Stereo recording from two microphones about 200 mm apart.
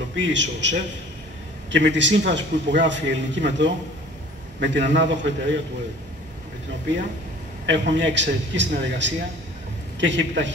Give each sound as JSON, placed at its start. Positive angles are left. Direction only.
{"t": 0.2, "sound": "a man's voice", "side_deg": -65}
{"t": 7.6, "sound": "a man's voice", "side_deg": -65}